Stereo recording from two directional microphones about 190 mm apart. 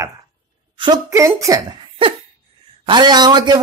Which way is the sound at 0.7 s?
20° right (ahead or behind).